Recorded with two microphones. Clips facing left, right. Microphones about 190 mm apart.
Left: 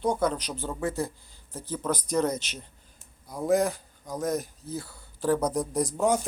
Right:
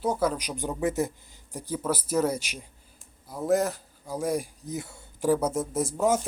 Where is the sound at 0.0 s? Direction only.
5° right (ahead or behind); by 5.0 s 20° right (ahead or behind).